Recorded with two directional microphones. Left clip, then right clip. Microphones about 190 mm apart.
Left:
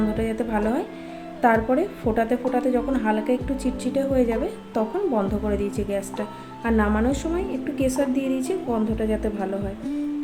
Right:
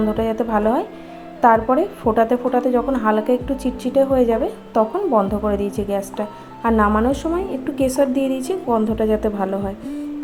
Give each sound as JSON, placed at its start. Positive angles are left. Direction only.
{"t": 0.2, "sound": "a woman's voice", "side_deg": -10}
{"t": 4.8, "sound": "a woman's voice", "side_deg": 0}
{"t": 5.5, "sound": "a woman's voice", "side_deg": -15}